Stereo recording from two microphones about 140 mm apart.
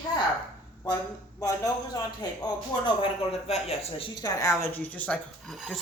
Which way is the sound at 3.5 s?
45° left (ahead or behind).